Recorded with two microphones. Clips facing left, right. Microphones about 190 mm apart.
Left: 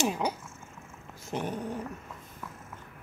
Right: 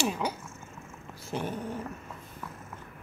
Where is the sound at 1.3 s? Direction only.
15° left (ahead or behind).